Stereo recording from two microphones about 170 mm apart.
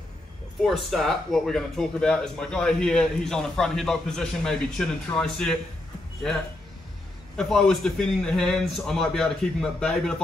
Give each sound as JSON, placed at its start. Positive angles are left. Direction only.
{"t": 0.6, "sound": "speech", "side_deg": 0}